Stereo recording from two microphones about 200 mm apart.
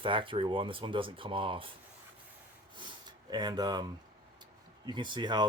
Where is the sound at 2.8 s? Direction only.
20° right (ahead or behind).